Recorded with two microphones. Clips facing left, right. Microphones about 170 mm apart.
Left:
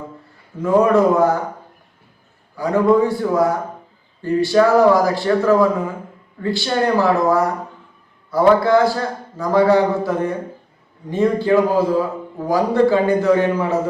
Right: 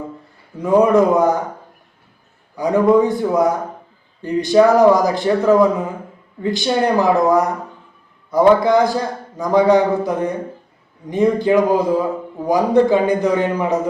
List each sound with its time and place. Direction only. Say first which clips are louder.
0.6 s a man's voice: right 1 dB; 15° right (ahead or behind)
2.6 s a man's voice: right 2 dB; 15° right (ahead or behind)